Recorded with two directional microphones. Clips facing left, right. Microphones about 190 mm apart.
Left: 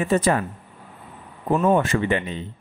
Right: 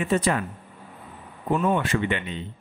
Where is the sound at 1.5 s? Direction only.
45° left (ahead or behind).